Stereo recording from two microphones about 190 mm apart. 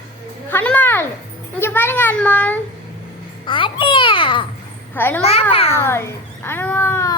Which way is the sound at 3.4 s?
25° left (ahead or behind).